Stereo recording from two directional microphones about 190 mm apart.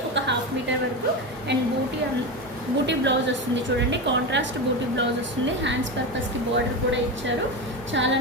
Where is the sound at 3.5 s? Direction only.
70° right (ahead or behind).